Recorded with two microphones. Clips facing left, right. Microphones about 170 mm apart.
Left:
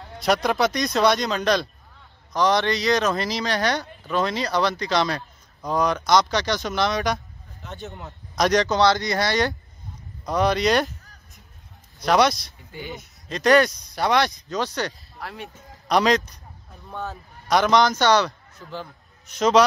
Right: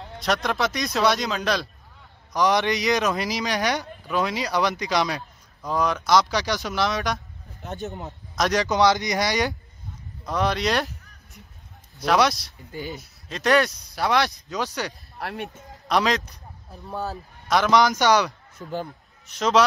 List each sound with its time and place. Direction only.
0.2 s speech: centre (ahead or behind)
2.3 s speech: 15° right (ahead or behind)
7.6 s speech: 45° right (ahead or behind)
8.4 s speech: centre (ahead or behind)
8.6 s speech: 15° right (ahead or behind)
10.2 s speech: centre (ahead or behind)
12.0 s speech: centre (ahead or behind)
12.7 s speech: 40° right (ahead or behind)
13.3 s speech: centre (ahead or behind)
15.1 s speech: 65° right (ahead or behind)
15.9 s speech: centre (ahead or behind)
16.9 s speech: 35° right (ahead or behind)
17.5 s a man's voice: centre (ahead or behind)
19.2 s a man's voice: centre (ahead or behind)